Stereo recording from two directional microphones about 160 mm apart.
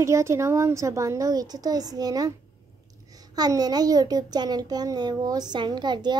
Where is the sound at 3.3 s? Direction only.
25° right (ahead or behind).